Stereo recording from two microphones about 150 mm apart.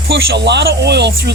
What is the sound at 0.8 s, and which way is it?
Speech, 90° right.